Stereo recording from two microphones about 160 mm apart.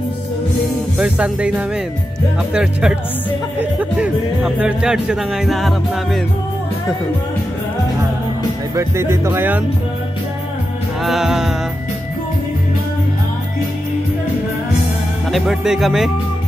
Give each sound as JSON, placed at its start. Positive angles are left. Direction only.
{"t": 0.9, "sound": "speech", "side_deg": -10}
{"t": 2.5, "sound": "music", "side_deg": -5}
{"t": 4.0, "sound": "music", "side_deg": -5}
{"t": 8.7, "sound": "speech", "side_deg": -15}
{"t": 11.1, "sound": "music", "side_deg": 0}
{"t": 15.3, "sound": "music", "side_deg": 0}